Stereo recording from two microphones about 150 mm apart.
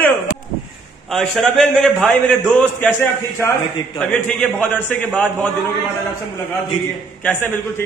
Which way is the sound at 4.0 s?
10° left (ahead or behind).